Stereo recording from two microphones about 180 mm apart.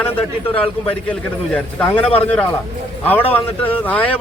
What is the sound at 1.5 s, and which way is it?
A man's voice, 5° left (ahead or behind).